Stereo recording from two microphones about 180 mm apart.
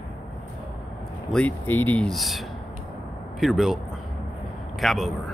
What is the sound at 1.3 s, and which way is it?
Speech, 10° left (ahead or behind).